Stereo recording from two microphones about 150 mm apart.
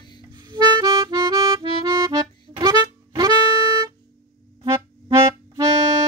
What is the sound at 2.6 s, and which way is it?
Music, 30° right (ahead or behind).